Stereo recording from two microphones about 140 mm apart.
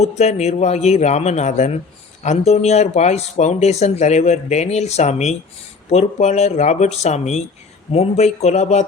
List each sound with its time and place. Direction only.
0.0 s speech: 50° left (ahead or behind)